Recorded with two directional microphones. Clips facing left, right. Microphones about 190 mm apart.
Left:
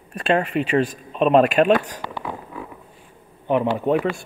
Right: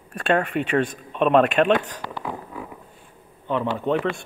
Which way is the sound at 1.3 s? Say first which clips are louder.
Left 2 dB; 5° left (ahead or behind).